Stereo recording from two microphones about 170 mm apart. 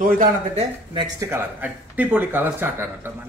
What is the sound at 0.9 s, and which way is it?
Speech, 15° right (ahead or behind).